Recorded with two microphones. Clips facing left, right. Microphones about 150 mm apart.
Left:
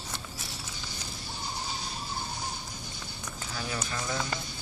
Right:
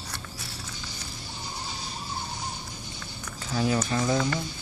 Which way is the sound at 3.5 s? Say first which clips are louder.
Right 11 dB; 35° right (ahead or behind).